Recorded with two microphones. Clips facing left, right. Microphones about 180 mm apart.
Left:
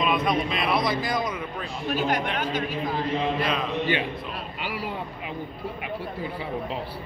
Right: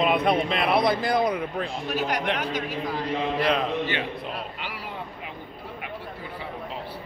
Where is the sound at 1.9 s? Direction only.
25° left (ahead or behind).